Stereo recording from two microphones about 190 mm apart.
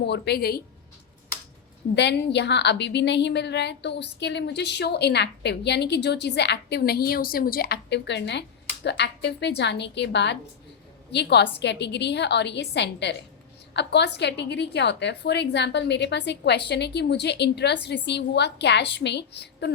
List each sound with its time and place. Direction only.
0.0 s a woman's voice: 60° left (ahead or behind)
2.0 s a woman's voice: 65° left (ahead or behind)